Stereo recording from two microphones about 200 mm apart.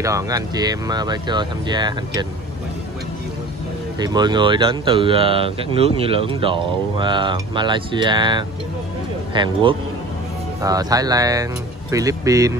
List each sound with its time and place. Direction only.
0.0 s speech: 15° right (ahead or behind)
4.0 s speech: 20° right (ahead or behind)